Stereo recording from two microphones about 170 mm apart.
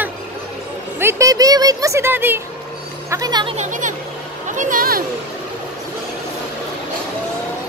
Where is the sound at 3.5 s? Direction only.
50° right (ahead or behind).